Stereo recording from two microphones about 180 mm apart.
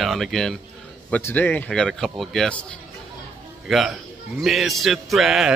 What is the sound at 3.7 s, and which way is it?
Speech, centre (ahead or behind).